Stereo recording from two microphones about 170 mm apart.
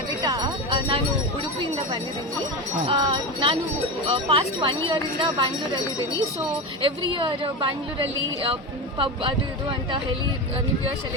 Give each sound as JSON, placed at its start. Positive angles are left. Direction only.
{"t": 0.2, "sound": "a sound", "side_deg": -20}
{"t": 2.8, "sound": "a woman's voice", "side_deg": -30}
{"t": 6.8, "sound": "a woman's voice", "side_deg": -30}